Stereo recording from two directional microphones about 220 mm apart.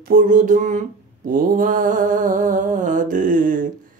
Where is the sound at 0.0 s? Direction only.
40° right (ahead or behind).